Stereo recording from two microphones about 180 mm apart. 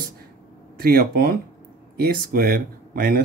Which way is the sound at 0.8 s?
60° right (ahead or behind).